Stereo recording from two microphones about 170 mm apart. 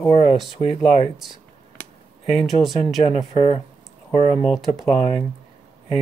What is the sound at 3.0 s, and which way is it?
Speech, 40° left (ahead or behind).